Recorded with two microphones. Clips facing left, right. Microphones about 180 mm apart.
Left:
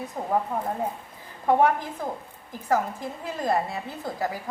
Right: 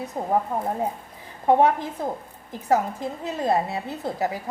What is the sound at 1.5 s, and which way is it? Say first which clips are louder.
A woman's voice: right 2 dB; 20° right (ahead or behind).